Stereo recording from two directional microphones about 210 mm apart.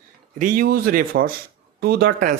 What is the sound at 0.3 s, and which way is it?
A man's voice, 40° right (ahead or behind).